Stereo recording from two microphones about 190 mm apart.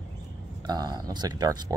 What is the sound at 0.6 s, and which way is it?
Speech, 20° right (ahead or behind).